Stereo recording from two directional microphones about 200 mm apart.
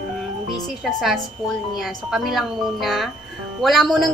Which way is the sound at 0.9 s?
Centre (ahead or behind).